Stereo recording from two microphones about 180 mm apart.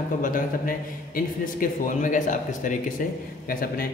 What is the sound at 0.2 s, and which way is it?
A man's voice, 50° left (ahead or behind).